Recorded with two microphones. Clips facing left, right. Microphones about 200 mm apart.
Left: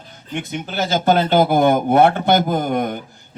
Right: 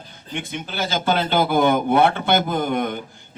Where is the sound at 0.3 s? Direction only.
45° left (ahead or behind).